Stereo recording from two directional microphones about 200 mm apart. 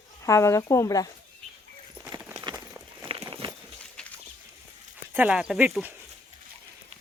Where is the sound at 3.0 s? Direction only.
25° right (ahead or behind).